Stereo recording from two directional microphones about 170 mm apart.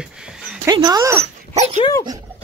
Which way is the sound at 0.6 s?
25° right (ahead or behind).